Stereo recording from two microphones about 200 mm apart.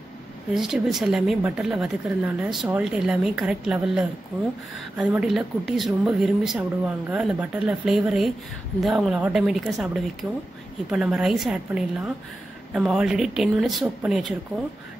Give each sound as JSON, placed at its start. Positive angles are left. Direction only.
{"t": 0.6, "sound": "speech", "side_deg": 0}